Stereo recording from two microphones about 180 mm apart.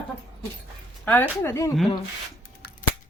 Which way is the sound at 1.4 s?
15° left (ahead or behind).